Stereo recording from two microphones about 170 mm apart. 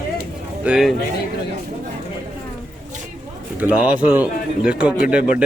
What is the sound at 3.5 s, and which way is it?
Speech, 10° right (ahead or behind).